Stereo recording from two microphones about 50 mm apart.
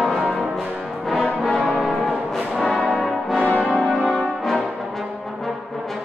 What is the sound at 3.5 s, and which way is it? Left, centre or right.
Brass instrument, centre.